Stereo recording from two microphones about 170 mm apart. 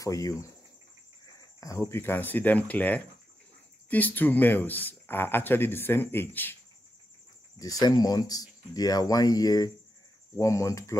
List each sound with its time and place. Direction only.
0.0 s speech: 20° left (ahead or behind)
1.6 s speech: 15° left (ahead or behind)
7.5 s speech: 20° left (ahead or behind)